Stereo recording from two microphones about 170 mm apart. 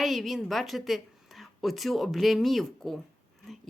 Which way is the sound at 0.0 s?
Centre (ahead or behind).